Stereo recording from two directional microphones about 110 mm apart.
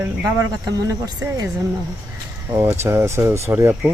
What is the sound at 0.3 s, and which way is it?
Speech, 30° right (ahead or behind).